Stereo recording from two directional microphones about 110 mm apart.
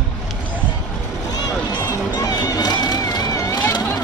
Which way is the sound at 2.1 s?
35° left (ahead or behind).